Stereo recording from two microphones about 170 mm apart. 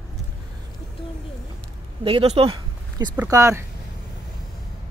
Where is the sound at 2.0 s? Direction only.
30° right (ahead or behind).